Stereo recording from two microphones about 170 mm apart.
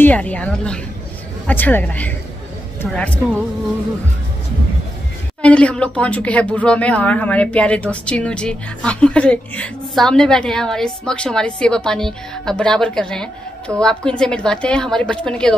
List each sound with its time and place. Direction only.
0.0 s a woman's voice: 10° left (ahead or behind)
5.4 s speech: 5° left (ahead or behind)